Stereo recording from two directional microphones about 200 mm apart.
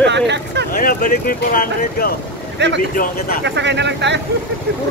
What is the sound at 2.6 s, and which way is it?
Speech, 60° right (ahead or behind).